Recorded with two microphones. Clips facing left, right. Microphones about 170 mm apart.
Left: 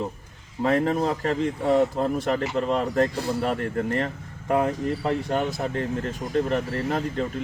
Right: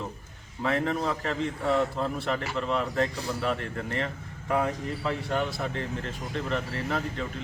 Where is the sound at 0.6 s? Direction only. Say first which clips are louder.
Left 5 dB; 40° left (ahead or behind).